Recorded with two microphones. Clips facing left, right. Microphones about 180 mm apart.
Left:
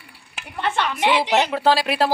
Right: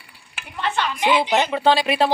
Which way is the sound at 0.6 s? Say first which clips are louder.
Left 1 dB; 50° left (ahead or behind).